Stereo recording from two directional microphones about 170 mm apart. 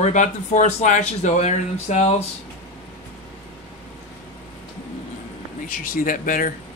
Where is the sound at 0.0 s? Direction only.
45° left (ahead or behind).